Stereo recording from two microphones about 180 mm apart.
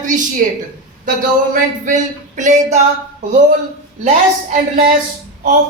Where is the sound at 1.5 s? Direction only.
45° right (ahead or behind).